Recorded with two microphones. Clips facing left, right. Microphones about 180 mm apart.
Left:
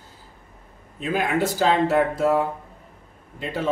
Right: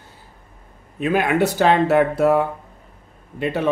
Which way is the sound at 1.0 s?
65° right (ahead or behind).